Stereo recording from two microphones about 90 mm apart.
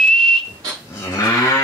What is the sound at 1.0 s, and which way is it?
Moo, 35° left (ahead or behind).